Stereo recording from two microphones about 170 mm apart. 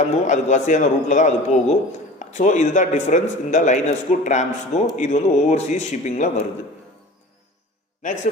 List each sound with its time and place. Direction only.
0.0 s speech: 45° left (ahead or behind)